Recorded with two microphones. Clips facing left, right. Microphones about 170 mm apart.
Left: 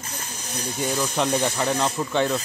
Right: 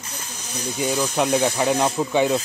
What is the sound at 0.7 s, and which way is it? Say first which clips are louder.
Speech: right 3 dB; 5° right (ahead or behind).